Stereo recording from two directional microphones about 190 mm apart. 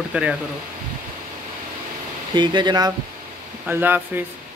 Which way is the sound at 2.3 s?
25° right (ahead or behind).